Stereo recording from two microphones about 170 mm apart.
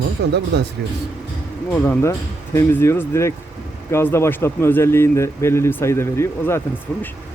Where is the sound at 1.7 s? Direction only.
10° left (ahead or behind).